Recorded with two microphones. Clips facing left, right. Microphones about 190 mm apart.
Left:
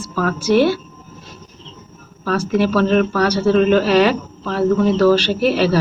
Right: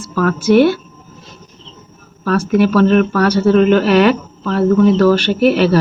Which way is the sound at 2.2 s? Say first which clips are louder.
Right 4 dB; 55° right (ahead or behind).